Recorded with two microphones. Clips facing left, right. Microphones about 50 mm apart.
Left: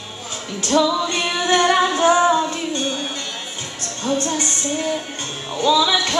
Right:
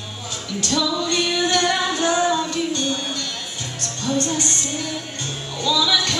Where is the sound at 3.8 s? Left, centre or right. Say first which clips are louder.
Left 1 dB; left.